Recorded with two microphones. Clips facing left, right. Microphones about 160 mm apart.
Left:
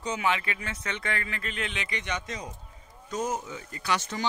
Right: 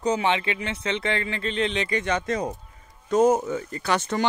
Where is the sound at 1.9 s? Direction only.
50° right (ahead or behind).